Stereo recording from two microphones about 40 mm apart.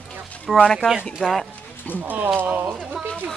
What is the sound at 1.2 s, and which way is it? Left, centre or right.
Speech, centre.